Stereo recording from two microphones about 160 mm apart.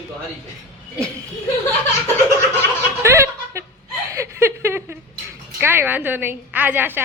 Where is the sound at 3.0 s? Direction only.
15° right (ahead or behind).